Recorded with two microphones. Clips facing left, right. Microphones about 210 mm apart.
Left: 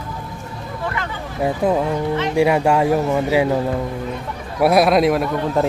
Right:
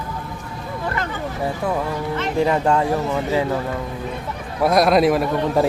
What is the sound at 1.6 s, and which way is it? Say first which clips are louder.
Speech: left 6 dB; 20° left (ahead or behind).